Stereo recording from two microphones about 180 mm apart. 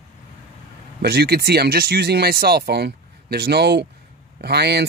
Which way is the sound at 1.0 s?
65° right (ahead or behind).